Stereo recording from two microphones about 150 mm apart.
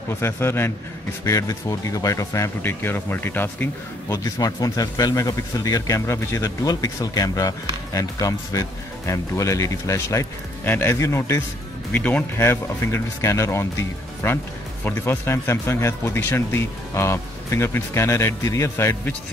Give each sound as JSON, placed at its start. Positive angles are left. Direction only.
{"t": 0.2, "sound": "speech", "side_deg": 15}